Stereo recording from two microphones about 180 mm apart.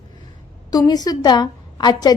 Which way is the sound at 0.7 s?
20° left (ahead or behind).